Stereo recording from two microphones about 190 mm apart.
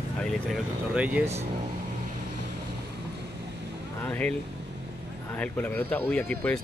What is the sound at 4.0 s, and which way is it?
Speech, 5° left (ahead or behind).